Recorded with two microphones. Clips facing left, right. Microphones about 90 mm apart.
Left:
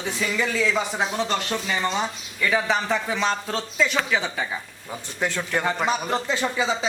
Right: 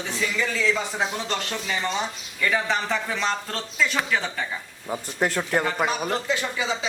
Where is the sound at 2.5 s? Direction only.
5° left (ahead or behind).